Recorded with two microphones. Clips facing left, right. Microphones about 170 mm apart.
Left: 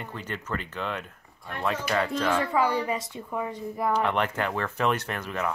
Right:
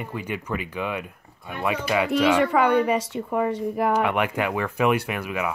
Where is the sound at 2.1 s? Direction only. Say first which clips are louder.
Right 6 dB; 80° right.